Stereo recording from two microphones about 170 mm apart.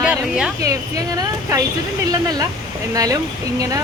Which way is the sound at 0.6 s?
20° right (ahead or behind).